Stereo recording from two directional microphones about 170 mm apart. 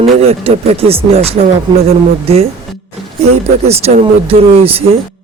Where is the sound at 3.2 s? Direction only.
40° right (ahead or behind).